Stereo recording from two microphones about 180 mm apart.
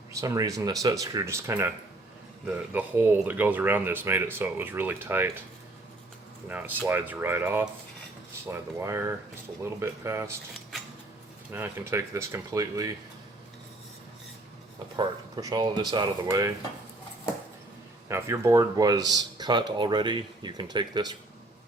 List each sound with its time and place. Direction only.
0.1 s speech: 20° right (ahead or behind)
6.5 s speech: 10° right (ahead or behind)
11.5 s speech: 15° right (ahead or behind)
14.9 s speech: 20° right (ahead or behind)
18.1 s speech: 15° right (ahead or behind)